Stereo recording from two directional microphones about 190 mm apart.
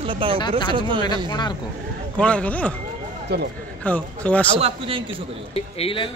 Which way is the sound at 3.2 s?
60° right (ahead or behind).